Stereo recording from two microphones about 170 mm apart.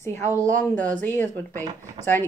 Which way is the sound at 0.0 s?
15° left (ahead or behind).